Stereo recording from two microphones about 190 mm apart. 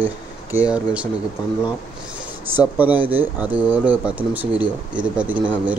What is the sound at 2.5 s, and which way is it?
Speech, 10° right (ahead or behind).